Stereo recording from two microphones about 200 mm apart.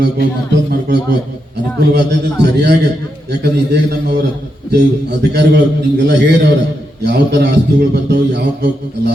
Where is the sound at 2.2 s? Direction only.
55° right (ahead or behind).